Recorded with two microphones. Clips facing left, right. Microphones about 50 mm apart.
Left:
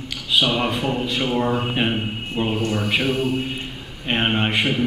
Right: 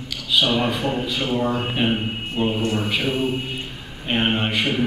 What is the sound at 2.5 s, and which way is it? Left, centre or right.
Speech, centre.